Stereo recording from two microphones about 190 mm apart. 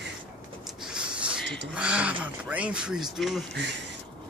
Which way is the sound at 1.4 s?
70° right (ahead or behind).